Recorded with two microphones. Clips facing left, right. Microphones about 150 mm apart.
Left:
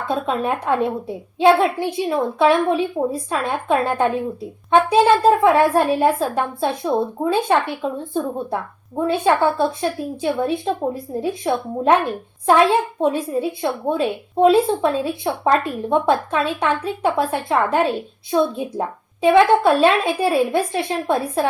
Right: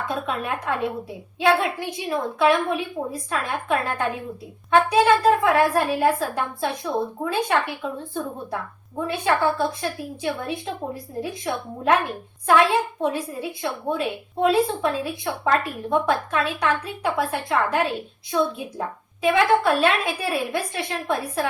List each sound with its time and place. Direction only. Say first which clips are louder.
0.1 s a woman's voice: left 9 dB; 30° left (ahead or behind)